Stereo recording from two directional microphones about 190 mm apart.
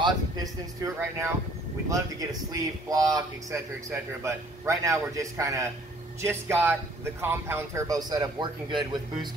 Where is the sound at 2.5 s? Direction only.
20° right (ahead or behind).